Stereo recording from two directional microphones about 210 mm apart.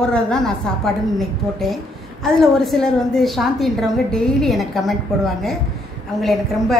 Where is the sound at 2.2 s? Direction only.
Centre (ahead or behind).